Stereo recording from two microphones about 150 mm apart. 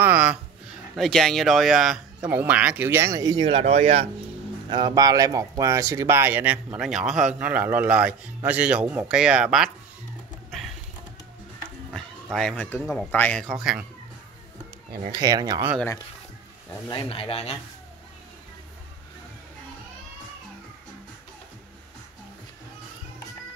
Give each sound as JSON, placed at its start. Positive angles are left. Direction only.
{"t": 0.0, "sound": "a sound", "side_deg": -10}
{"t": 0.9, "sound": "speech", "side_deg": 0}
{"t": 4.6, "sound": "speech", "side_deg": -30}
{"t": 11.9, "sound": "cat", "side_deg": 5}
{"t": 12.8, "sound": "speech", "side_deg": 5}
{"t": 15.0, "sound": "speech", "side_deg": -25}
{"t": 16.9, "sound": "speech", "side_deg": 40}